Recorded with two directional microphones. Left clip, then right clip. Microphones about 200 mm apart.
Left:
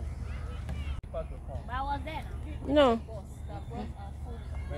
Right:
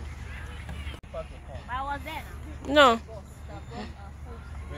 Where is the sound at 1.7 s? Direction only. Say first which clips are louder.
Right 2 dB; 45° left (ahead or behind).